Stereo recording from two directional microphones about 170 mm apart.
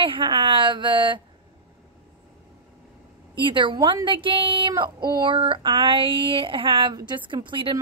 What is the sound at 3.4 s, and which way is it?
A woman's voice, 30° right (ahead or behind).